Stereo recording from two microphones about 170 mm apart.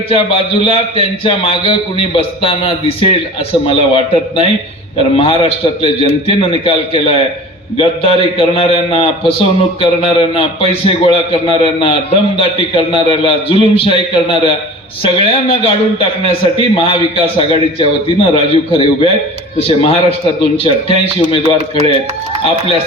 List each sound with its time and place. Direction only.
0.1 s a man's voice: 30° left (ahead or behind)